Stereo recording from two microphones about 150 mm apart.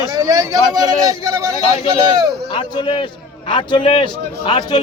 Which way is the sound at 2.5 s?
30° left (ahead or behind).